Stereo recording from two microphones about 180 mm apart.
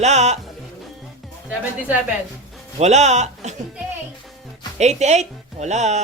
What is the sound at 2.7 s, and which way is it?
Speech, 40° right (ahead or behind).